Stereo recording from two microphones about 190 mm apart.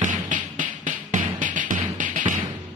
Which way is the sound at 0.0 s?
40° right (ahead or behind).